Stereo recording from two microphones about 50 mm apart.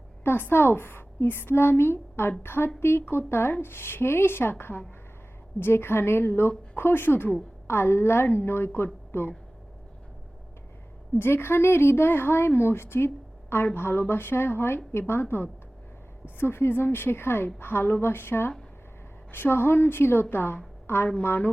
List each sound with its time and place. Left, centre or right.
0.3 s a woman's voice: left
11.2 s a woman's voice: left
15.2 s a woman's voice: left
21.2 s a woman's voice: left